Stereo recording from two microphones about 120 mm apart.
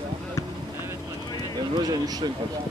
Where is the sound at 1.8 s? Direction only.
35° right (ahead or behind).